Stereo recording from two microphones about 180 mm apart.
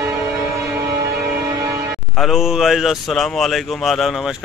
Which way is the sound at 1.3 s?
20° right (ahead or behind).